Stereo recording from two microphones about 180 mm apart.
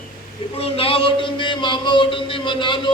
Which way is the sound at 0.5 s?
30° left (ahead or behind).